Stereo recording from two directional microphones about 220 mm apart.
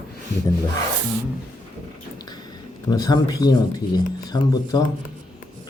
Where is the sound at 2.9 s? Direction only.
15° left (ahead or behind).